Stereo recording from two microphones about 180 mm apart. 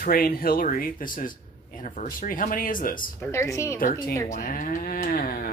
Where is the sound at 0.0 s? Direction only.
55° left (ahead or behind).